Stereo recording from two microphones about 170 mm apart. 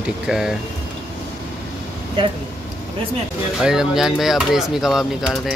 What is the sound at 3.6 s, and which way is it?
Speech, 5° right (ahead or behind).